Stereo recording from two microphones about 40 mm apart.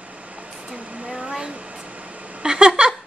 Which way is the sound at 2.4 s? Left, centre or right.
Right.